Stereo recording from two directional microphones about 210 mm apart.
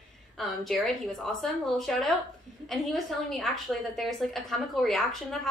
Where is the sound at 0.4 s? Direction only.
Centre (ahead or behind).